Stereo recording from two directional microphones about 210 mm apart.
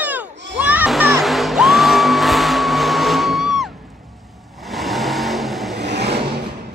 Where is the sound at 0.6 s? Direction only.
5° right (ahead or behind).